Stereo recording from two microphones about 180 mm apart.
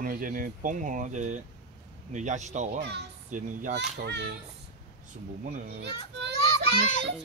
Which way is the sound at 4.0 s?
70° right (ahead or behind).